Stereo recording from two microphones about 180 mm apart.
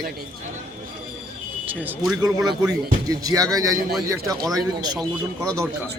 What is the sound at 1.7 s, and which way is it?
Speech, 10° right (ahead or behind).